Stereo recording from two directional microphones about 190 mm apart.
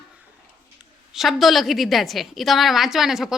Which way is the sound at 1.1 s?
Centre (ahead or behind).